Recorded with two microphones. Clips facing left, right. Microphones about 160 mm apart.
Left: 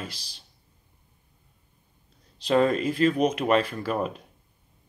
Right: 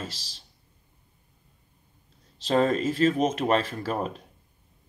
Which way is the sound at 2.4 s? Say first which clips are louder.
Left 1 dB; 40° right (ahead or behind).